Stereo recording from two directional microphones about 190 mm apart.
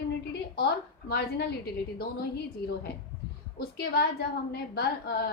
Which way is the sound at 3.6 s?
60° left (ahead or behind).